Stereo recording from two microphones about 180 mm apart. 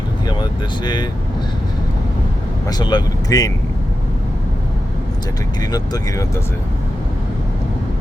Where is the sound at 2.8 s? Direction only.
25° left (ahead or behind).